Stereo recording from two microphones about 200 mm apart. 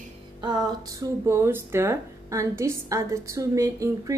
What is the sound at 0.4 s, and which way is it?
Speech, 20° right (ahead or behind).